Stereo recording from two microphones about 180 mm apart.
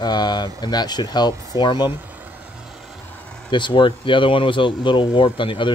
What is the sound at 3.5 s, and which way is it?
Speech, 25° left (ahead or behind).